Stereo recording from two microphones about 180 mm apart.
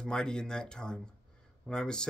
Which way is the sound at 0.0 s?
5° left (ahead or behind).